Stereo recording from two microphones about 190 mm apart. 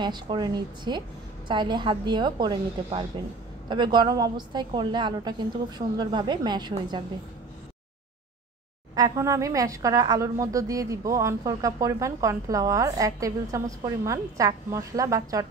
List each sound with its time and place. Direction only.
0.0 s a woman's voice: 25° right (ahead or behind)
8.9 s a woman's voice: 20° right (ahead or behind)